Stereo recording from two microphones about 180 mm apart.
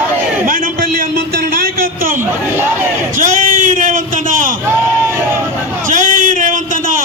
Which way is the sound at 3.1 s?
45° right (ahead or behind).